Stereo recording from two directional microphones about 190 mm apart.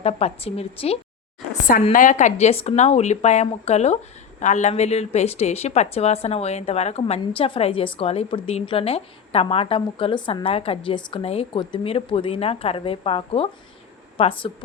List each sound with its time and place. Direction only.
0.0 s a woman's voice: 30° left (ahead or behind)